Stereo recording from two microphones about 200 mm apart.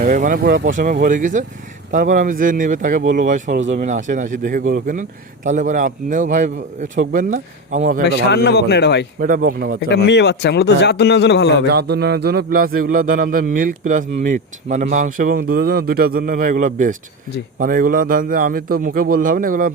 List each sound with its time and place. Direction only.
0.0 s a man's voice: 40° right (ahead or behind)
8.0 s a man's voice: 55° left (ahead or behind)
9.2 s a man's voice: 45° right (ahead or behind)
9.9 s a man's voice: 55° left (ahead or behind)
11.7 s a man's voice: 55° right (ahead or behind)